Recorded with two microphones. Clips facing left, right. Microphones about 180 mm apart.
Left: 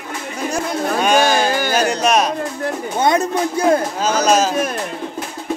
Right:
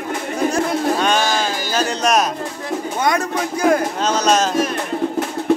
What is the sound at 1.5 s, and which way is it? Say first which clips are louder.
Music: left 5 dB; 60° left (ahead or behind).